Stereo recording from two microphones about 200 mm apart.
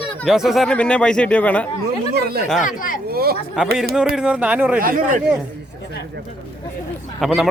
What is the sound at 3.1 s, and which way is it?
Speech, 50° right (ahead or behind).